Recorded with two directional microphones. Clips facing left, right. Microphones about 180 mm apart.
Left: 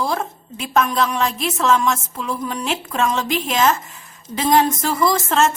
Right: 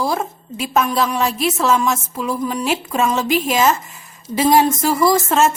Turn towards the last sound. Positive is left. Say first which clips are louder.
# right 3 dB
turn(degrees=-5)  # may be behind; listen again after turning